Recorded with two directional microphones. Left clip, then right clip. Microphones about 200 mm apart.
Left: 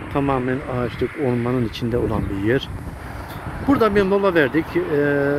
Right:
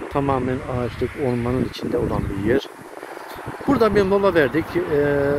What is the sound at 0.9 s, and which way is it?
Speech, 65° right (ahead or behind).